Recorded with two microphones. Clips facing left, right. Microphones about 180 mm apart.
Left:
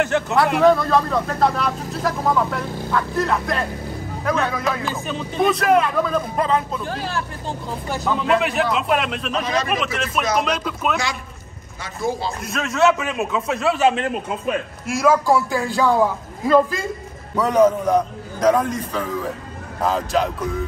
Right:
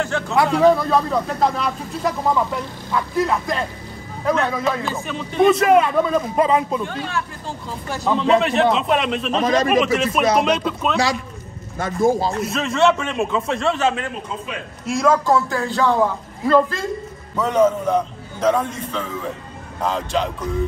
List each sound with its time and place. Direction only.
0.3 s speech: centre (ahead or behind)
8.2 s speech: 5° left (ahead or behind)
9.4 s speech: 45° right (ahead or behind)
10.4 s speech: centre (ahead or behind)
11.8 s speech: 50° right (ahead or behind)
12.4 s a man's voice: centre (ahead or behind)